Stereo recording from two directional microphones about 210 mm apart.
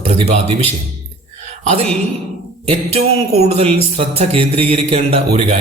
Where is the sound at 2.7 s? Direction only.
30° right (ahead or behind).